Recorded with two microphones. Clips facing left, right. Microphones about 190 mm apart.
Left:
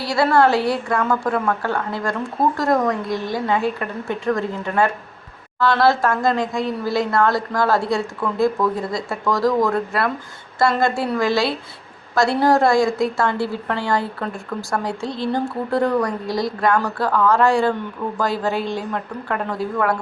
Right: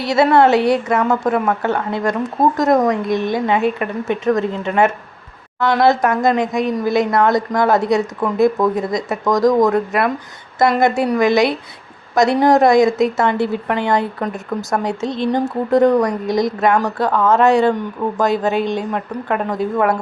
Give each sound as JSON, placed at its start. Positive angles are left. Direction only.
{"t": 0.0, "sound": "a woman's voice", "side_deg": -20}